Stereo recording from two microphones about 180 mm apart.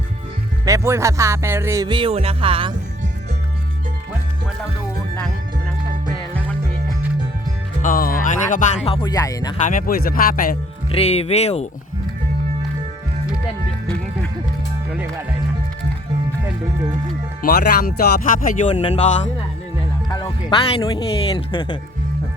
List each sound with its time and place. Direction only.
0.6 s music: 15° right (ahead or behind)
7.8 s speech: 50° left (ahead or behind); by 9.6 s 20° left (ahead or behind)
9.6 s speech: 45° left (ahead or behind)
10.9 s speech: 35° left (ahead or behind)
13.8 s music: 5° left (ahead or behind)
17.4 s speech: 55° left (ahead or behind)
20.1 s speech: 30° left (ahead or behind)